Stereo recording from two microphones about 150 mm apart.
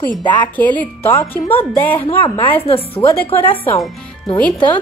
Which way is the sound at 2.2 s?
30° left (ahead or behind).